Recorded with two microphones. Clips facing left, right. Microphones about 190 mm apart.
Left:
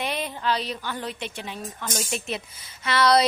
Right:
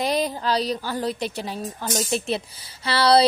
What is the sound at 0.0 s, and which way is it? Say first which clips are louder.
A woman's voice: right 5 dB; 35° right (ahead or behind).